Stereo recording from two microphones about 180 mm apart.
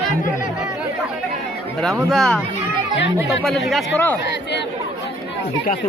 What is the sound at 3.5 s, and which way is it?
Speech, centre (ahead or behind).